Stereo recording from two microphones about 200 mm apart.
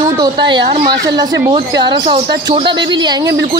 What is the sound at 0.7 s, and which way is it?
Speech, 50° right (ahead or behind).